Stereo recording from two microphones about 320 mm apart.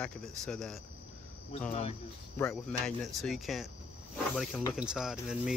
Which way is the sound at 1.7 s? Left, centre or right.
Centre.